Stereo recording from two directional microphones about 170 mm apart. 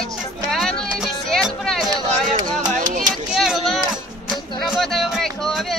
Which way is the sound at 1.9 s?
25° right (ahead or behind).